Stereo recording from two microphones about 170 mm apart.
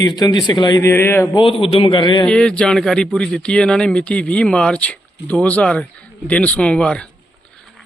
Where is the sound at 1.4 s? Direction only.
30° left (ahead or behind).